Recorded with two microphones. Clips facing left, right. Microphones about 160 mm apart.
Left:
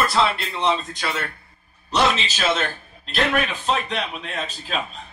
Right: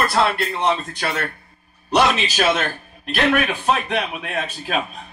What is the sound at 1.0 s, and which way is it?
A man's voice, 60° right (ahead or behind).